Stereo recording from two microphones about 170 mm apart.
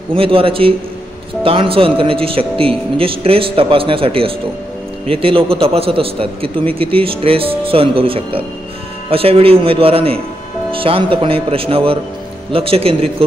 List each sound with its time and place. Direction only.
0.1 s a man's voice: 30° right (ahead or behind)